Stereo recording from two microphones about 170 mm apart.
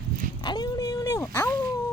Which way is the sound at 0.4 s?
25° left (ahead or behind).